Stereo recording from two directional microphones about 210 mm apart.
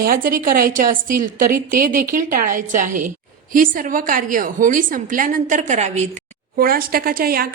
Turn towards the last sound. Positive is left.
turn(degrees=-45)  # may be behind; listen again after turning